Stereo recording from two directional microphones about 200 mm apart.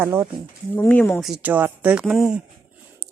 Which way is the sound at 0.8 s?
10° left (ahead or behind).